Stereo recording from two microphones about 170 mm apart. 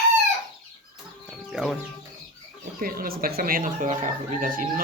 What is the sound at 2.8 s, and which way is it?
Speech, 60° right (ahead or behind).